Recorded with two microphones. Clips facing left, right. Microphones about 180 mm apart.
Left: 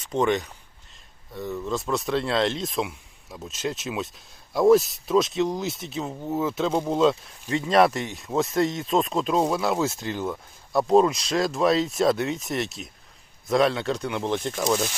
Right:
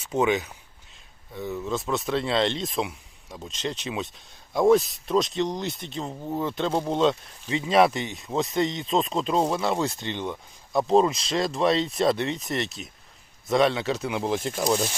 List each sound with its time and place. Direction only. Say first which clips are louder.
0.1 s speech: even; 5° right (ahead or behind)